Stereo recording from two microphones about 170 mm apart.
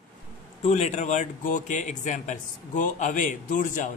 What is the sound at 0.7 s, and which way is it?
Speech, 40° left (ahead or behind).